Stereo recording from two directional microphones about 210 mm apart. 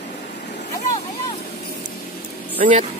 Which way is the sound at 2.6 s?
35° right (ahead or behind).